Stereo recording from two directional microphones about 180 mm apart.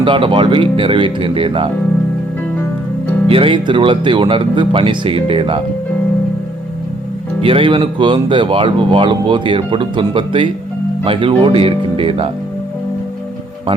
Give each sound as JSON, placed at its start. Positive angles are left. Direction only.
{"t": 0.0, "sound": "speech", "side_deg": -30}
{"t": 3.2, "sound": "speech", "side_deg": -30}
{"t": 7.4, "sound": "speech", "side_deg": -30}